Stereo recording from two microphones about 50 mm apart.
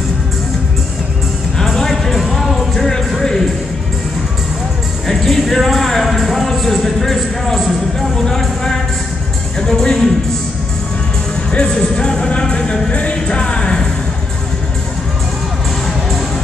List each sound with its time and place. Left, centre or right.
1.6 s music: centre
5.0 s a sound: centre
8.2 s music: centre
11.8 s music: centre